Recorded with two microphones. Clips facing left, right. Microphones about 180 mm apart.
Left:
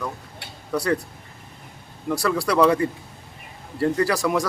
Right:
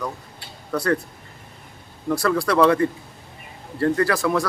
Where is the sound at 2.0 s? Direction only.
10° left (ahead or behind).